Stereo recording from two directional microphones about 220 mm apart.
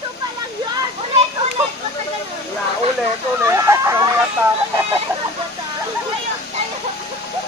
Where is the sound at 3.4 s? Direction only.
15° right (ahead or behind).